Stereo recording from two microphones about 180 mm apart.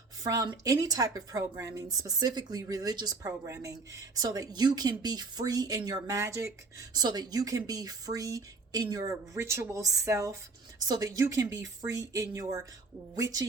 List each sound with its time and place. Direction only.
0.2 s speech: 20° right (ahead or behind)